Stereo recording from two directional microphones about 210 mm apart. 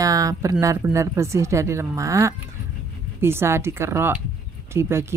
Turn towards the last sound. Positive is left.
turn(degrees=-10)  # may be behind; listen again after turning